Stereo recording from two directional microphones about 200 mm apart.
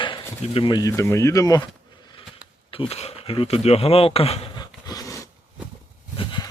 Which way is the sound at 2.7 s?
30° left (ahead or behind).